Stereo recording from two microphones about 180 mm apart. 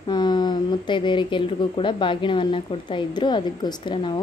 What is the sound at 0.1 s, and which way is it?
Speech, 25° left (ahead or behind).